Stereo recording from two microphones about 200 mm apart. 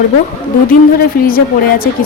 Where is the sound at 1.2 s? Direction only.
45° left (ahead or behind).